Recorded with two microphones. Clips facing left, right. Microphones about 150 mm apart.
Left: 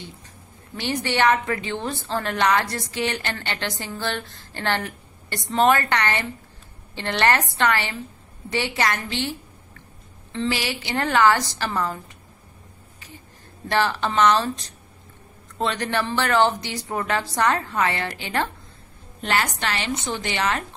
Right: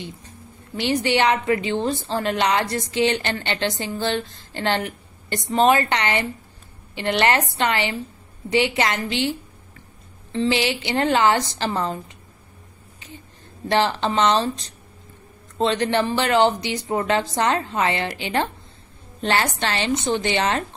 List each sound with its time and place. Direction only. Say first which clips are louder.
0.7 s a woman's voice: right 3 dB; 20° right (ahead or behind)
10.3 s a woman's voice: right 5 dB; 20° right (ahead or behind)
13.7 s a woman's voice: right 2 dB; 20° right (ahead or behind)